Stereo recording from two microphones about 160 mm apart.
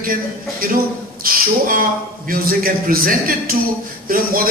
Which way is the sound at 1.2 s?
60° right (ahead or behind).